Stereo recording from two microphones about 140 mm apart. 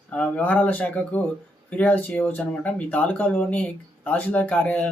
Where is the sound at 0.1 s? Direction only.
10° left (ahead or behind).